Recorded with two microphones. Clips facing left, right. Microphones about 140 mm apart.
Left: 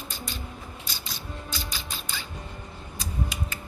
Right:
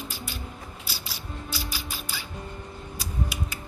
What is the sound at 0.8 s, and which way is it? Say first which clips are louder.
Mechanisms: even; 10° right (ahead or behind).